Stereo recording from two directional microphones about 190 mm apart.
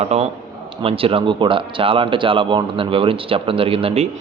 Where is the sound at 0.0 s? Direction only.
35° right (ahead or behind).